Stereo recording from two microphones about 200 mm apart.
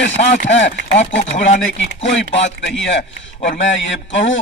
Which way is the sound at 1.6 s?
65° left (ahead or behind).